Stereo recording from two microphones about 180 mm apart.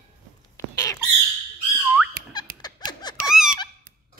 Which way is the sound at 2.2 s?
60° right (ahead or behind).